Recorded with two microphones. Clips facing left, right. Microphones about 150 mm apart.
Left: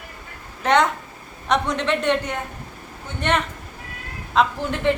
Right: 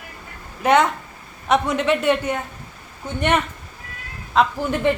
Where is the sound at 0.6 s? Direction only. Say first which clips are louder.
Right 2 dB; 5° right (ahead or behind).